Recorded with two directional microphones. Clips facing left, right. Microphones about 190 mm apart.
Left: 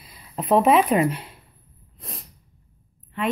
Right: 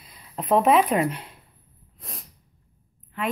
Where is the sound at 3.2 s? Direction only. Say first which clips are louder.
Left 3 dB; centre (ahead or behind).